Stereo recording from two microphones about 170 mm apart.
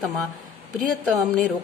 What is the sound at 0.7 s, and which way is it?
Speech, centre (ahead or behind).